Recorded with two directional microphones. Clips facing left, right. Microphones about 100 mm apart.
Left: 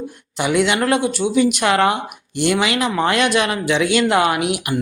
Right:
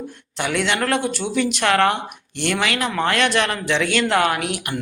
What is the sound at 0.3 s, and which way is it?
Speech, 15° left (ahead or behind).